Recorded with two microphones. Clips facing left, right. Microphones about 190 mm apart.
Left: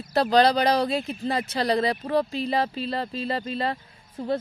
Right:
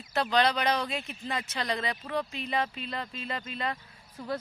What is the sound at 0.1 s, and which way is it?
Speech, 35° left (ahead or behind).